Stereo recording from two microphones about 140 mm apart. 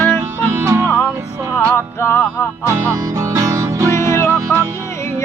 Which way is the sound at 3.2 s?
20° right (ahead or behind).